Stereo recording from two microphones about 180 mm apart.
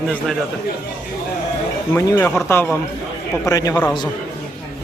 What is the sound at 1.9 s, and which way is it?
Speech, 10° left (ahead or behind).